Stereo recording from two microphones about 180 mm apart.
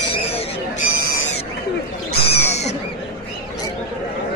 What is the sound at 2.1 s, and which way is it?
Owl, 35° left (ahead or behind).